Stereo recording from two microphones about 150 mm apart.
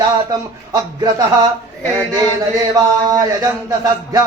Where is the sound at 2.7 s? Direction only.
25° right (ahead or behind).